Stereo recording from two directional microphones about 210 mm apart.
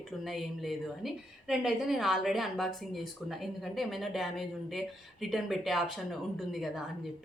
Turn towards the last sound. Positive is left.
turn(degrees=0)  # may be behind; listen again after turning